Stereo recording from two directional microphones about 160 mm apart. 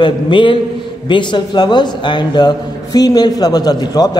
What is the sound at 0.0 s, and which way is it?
A man's voice, 30° left (ahead or behind).